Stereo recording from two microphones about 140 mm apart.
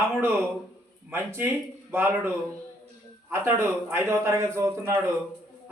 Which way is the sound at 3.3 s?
20° right (ahead or behind).